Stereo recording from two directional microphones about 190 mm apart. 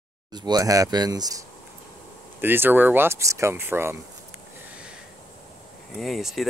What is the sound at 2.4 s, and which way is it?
Speech, 10° right (ahead or behind).